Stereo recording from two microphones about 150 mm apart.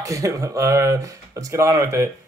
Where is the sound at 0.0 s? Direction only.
20° right (ahead or behind).